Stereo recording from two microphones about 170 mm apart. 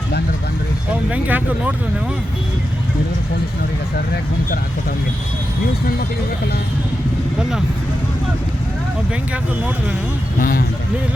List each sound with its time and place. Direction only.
1.1 s speech: 10° right (ahead or behind)
10.4 s speech: 55° left (ahead or behind)